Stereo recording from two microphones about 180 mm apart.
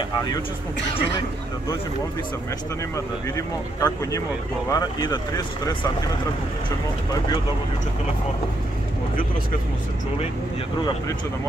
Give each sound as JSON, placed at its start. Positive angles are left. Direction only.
{"t": 3.3, "sound": "speech", "side_deg": 20}